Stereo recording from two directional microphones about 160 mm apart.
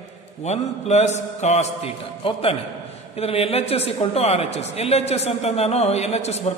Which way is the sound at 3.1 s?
40° left (ahead or behind).